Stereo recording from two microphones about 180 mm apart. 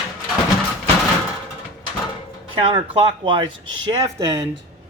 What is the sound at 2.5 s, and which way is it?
A man's voice, 30° right (ahead or behind).